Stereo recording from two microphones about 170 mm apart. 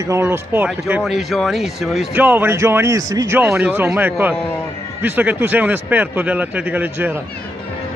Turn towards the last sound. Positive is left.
turn(degrees=-10)  # may be behind; listen again after turning